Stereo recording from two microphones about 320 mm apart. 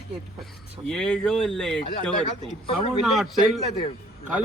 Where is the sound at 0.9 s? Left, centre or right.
Centre.